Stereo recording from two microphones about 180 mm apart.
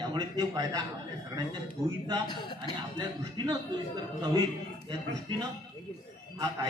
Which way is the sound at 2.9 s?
25° right (ahead or behind).